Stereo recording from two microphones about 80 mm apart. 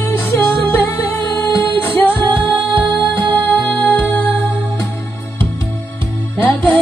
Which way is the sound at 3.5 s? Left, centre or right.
Left.